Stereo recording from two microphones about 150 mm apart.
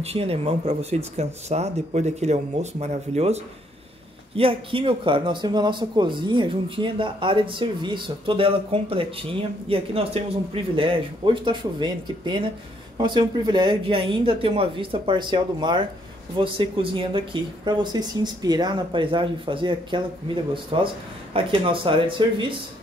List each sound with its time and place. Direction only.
0.0 s speech: 40° right (ahead or behind)
4.4 s speech: 35° right (ahead or behind)